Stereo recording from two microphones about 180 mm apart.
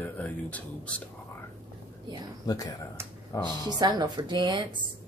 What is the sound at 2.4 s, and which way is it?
Speech, 20° left (ahead or behind).